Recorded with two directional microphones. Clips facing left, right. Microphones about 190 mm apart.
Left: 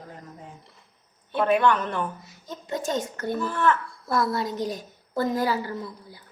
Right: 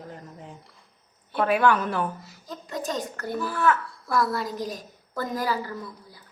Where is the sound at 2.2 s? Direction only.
25° left (ahead or behind).